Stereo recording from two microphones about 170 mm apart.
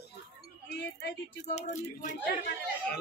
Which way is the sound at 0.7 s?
75° left (ahead or behind).